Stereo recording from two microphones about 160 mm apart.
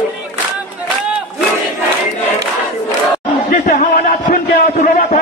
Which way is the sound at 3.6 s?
60° left (ahead or behind).